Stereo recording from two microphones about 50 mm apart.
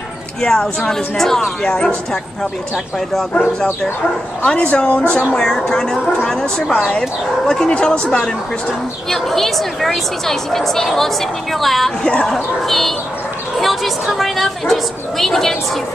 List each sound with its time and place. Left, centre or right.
0.4 s speech: centre
4.5 s a woman's voice: centre
5.4 s speech: centre
9.1 s a woman's voice: centre
12.0 s speech: centre
12.6 s a woman's voice: centre